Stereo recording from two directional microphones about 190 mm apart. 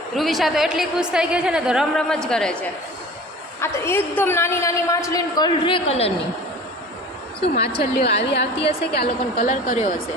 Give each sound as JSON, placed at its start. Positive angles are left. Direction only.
{"t": 0.2, "sound": "a woman's voice", "side_deg": 0}
{"t": 8.0, "sound": "a woman's voice", "side_deg": 65}